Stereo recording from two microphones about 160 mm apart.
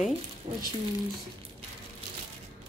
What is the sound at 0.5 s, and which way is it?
Speech, 30° right (ahead or behind).